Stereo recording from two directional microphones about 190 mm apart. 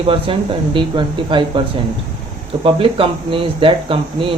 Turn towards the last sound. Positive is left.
turn(degrees=-30)  # may be behind; listen again after turning